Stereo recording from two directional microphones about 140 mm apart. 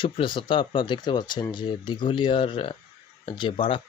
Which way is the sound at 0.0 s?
35° left (ahead or behind).